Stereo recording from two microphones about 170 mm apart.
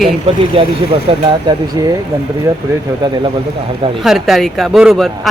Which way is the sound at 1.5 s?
20° right (ahead or behind).